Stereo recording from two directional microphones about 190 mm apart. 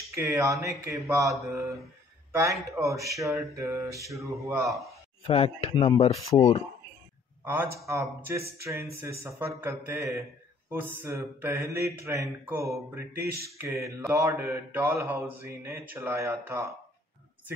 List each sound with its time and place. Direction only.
0.1 s speech: 15° right (ahead or behind)
5.2 s speech: 30° left (ahead or behind)
7.4 s speech: 10° right (ahead or behind)